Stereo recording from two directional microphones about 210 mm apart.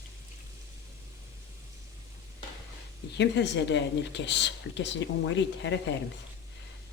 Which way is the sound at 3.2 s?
55° left (ahead or behind).